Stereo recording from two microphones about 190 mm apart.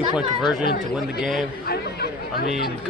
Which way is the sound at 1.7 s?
55° left (ahead or behind).